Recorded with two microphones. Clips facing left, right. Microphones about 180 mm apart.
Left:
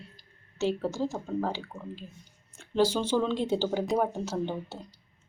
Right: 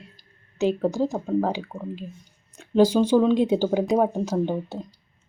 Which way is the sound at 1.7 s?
35° right (ahead or behind).